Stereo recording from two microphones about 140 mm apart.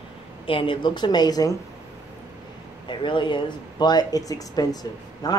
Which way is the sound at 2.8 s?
35° left (ahead or behind).